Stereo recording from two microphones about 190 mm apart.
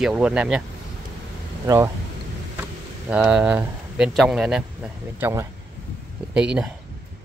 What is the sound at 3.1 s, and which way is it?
Speech, 5° right (ahead or behind).